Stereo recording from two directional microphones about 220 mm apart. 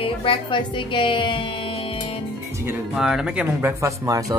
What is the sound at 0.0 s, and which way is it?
Speech, 25° left (ahead or behind).